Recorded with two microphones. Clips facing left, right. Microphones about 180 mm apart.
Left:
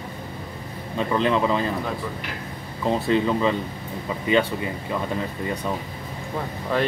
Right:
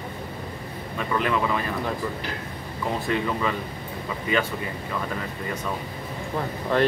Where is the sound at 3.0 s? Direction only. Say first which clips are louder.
Left 5 dB; 25° left (ahead or behind).